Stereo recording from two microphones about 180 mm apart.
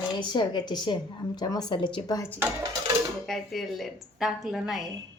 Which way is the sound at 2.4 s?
15° right (ahead or behind).